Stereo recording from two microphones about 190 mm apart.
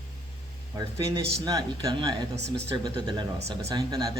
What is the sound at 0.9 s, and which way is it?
Speech, 20° right (ahead or behind).